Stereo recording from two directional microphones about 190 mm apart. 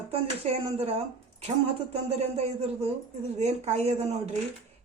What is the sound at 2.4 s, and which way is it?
Speech, 35° right (ahead or behind).